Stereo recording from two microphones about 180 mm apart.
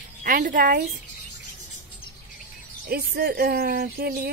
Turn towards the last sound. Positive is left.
turn(degrees=-60)  # may be behind; listen again after turning